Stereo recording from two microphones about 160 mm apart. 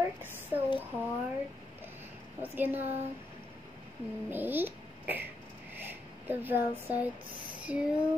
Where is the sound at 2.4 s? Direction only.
10° right (ahead or behind).